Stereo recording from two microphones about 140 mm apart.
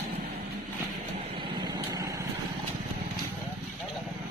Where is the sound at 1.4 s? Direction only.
30° right (ahead or behind).